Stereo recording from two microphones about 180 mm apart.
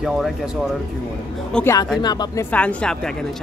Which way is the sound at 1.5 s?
15° left (ahead or behind).